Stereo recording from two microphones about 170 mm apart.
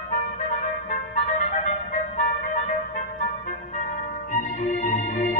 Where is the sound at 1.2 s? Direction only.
45° left (ahead or behind).